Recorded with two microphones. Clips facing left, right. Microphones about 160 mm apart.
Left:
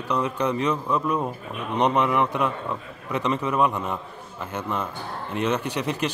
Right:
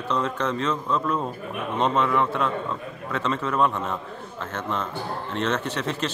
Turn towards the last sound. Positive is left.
turn(degrees=15)  # may be behind; listen again after turning